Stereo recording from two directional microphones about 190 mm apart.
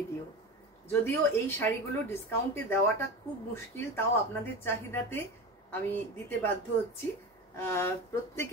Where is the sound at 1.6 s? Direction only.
10° left (ahead or behind).